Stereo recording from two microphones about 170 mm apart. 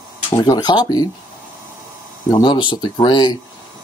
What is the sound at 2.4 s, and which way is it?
Speech, 30° left (ahead or behind).